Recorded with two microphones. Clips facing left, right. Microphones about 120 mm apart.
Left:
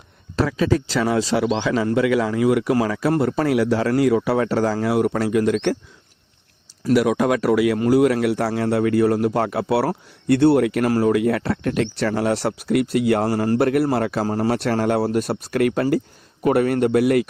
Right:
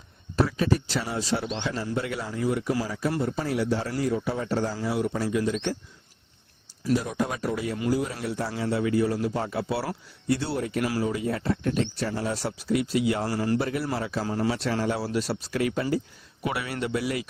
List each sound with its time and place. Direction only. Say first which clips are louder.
0.3 s speech: left 5 dB; 90° left; by 5.7 s 65° left (ahead or behind)
6.9 s speech: left 9 dB; 75° left (ahead or behind)
7.9 s speech: left 10 dB; 70° left (ahead or behind)
10.8 s speech: left 9 dB; 55° left (ahead or behind)
14.3 s speech: left 6 dB; 45° left (ahead or behind)
16.4 s a man's voice: left 12 dB; 50° left (ahead or behind)